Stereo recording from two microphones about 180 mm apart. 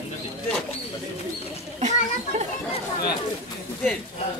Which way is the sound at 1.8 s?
40° right (ahead or behind).